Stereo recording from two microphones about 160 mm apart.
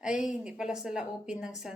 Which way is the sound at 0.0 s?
5° right (ahead or behind).